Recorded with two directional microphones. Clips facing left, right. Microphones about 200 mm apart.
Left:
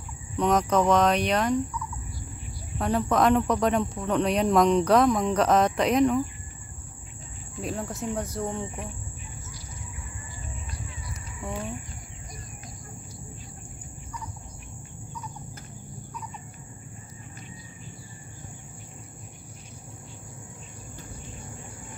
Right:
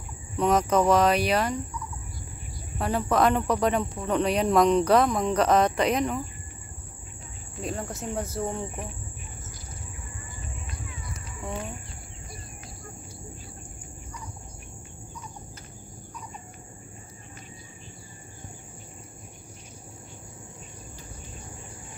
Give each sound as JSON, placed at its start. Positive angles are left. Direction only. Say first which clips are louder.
{"t": 0.4, "sound": "speech", "louder": "even", "side_deg": -5}
{"t": 2.8, "sound": "speech", "louder": "even", "side_deg": 0}
{"t": 7.6, "sound": "speech", "louder": "left 1 dB", "side_deg": 0}